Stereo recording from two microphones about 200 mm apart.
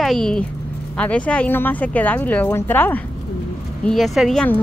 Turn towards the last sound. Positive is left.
turn(degrees=5)  # may be behind; listen again after turning